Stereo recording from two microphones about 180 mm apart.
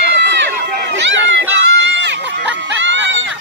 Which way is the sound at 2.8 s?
90° right.